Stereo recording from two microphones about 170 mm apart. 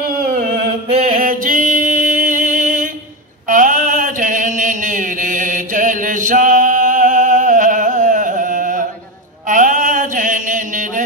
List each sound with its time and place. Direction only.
1.1 s music: 55° right (ahead or behind)
3.4 s mantra: 50° right (ahead or behind)